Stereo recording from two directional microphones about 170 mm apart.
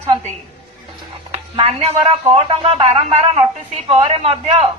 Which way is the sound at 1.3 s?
35° right (ahead or behind).